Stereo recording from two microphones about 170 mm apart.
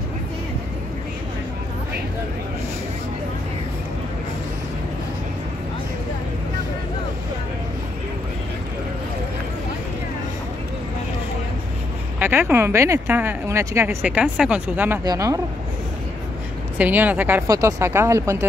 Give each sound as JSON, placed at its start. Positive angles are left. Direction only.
{"t": 12.2, "sound": "speech", "side_deg": -10}
{"t": 15.0, "sound": "speech", "side_deg": -20}
{"t": 16.7, "sound": "speech", "side_deg": -10}